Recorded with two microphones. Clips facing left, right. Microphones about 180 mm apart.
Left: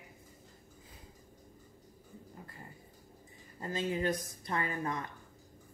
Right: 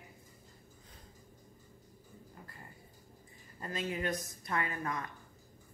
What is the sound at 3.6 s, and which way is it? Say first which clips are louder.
Speech: left 3 dB; 25° left (ahead or behind).